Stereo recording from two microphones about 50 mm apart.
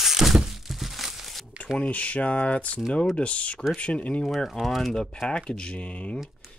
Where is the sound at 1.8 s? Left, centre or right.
Left.